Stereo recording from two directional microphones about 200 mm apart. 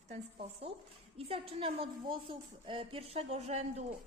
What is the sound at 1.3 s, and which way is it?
A woman's voice, 25° right (ahead or behind).